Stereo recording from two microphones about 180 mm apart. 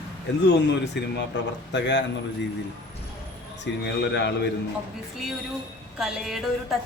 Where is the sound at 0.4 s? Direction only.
70° left (ahead or behind).